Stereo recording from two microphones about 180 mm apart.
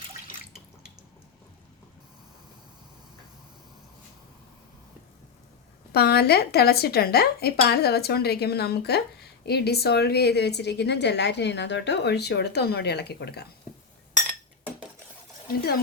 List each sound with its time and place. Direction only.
5.9 s speech: 60° left (ahead or behind)